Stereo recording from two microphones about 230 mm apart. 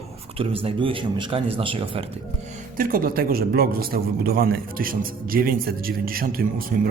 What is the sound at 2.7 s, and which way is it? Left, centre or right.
A man's voice, right.